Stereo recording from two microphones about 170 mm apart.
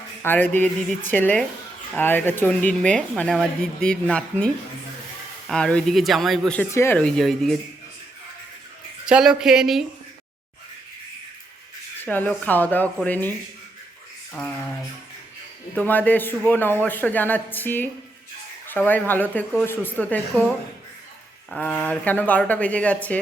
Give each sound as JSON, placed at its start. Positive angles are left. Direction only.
{"t": 0.2, "sound": "speech", "side_deg": 10}
{"t": 9.0, "sound": "speech", "side_deg": -5}
{"t": 12.0, "sound": "speech", "side_deg": 10}
{"t": 15.7, "sound": "speech", "side_deg": 10}
{"t": 21.5, "sound": "speech", "side_deg": 10}